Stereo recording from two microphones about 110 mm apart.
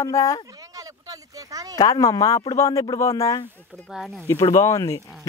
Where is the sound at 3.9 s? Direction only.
Centre (ahead or behind).